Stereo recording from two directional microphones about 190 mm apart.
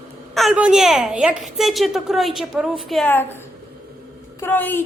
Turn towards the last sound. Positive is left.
turn(degrees=10)  # may be behind; listen again after turning